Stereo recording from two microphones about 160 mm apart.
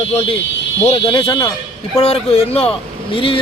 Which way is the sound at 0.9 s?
35° left (ahead or behind).